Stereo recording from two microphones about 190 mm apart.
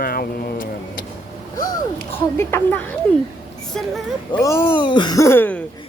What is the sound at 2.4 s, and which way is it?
Speech, 10° left (ahead or behind).